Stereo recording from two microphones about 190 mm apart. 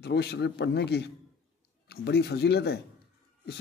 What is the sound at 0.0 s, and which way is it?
Speech, 60° left (ahead or behind).